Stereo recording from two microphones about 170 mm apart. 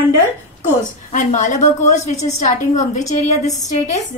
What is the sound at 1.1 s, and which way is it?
A woman's voice, 45° left (ahead or behind).